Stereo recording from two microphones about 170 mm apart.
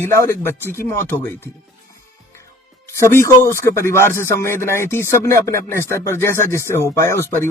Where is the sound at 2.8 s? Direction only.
15° left (ahead or behind).